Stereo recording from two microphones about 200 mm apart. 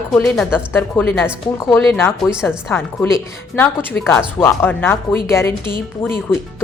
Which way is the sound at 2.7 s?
15° left (ahead or behind).